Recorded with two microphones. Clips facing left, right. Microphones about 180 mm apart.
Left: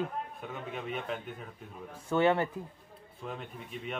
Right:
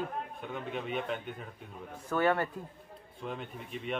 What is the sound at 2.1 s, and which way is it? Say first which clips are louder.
Speech: left 2 dB; 20° left (ahead or behind).